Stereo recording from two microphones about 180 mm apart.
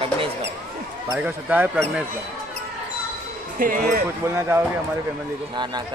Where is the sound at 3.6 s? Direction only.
50° right (ahead or behind).